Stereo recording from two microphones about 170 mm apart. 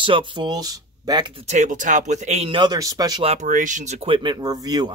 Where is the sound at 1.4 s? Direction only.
45° right (ahead or behind); by 3.3 s 20° right (ahead or behind).